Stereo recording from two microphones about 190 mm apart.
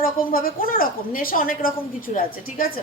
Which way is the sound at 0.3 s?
50° left (ahead or behind).